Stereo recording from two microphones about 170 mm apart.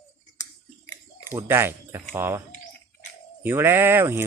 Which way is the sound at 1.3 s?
15° right (ahead or behind).